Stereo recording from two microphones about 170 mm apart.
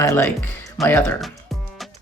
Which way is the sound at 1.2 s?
Centre (ahead or behind).